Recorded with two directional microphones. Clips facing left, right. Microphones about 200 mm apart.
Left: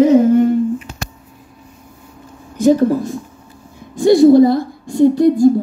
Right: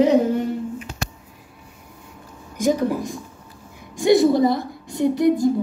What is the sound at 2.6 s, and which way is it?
Speech, 15° right (ahead or behind).